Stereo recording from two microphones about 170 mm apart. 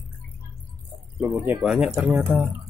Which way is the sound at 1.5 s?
Centre (ahead or behind).